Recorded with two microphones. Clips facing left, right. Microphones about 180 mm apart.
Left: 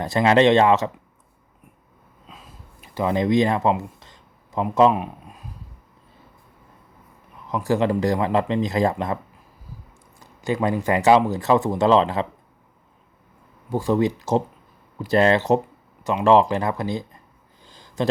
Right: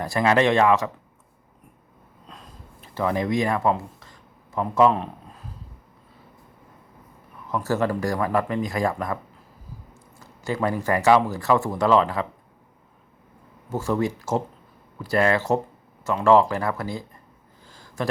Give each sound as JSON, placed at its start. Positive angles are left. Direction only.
{"t": 0.0, "sound": "speech", "side_deg": 25}
{"t": 2.2, "sound": "a sound", "side_deg": 5}
{"t": 2.9, "sound": "speech", "side_deg": 20}
{"t": 7.4, "sound": "speech", "side_deg": 15}
{"t": 10.2, "sound": "speech", "side_deg": 20}
{"t": 13.7, "sound": "speech", "side_deg": 15}
{"t": 17.6, "sound": "a sound", "side_deg": 20}